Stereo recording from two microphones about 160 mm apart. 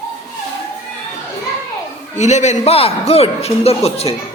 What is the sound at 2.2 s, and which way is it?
A man's voice, 45° left (ahead or behind).